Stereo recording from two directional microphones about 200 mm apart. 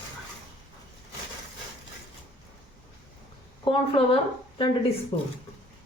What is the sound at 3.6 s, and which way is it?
A woman's voice, 25° left (ahead or behind).